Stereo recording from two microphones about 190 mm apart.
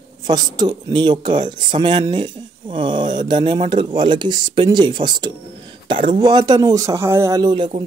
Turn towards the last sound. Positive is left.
turn(degrees=-25)  # may be behind; listen again after turning